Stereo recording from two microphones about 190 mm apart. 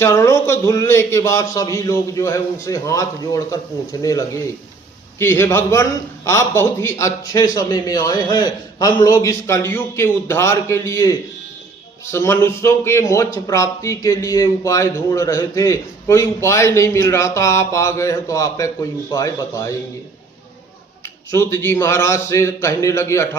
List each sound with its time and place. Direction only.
0.0 s speech: 15° left (ahead or behind)
5.2 s speech: 15° left (ahead or behind)
21.0 s speech: 15° left (ahead or behind)